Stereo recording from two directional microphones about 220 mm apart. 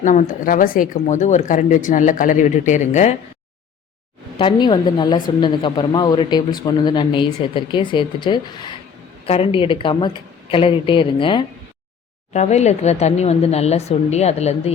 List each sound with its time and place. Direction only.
0.0 s speech: 35° left (ahead or behind)
4.4 s a woman's voice: 20° left (ahead or behind)